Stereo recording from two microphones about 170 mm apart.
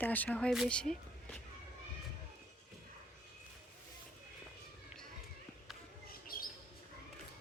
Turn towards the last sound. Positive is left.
turn(degrees=55)  # may be behind; listen again after turning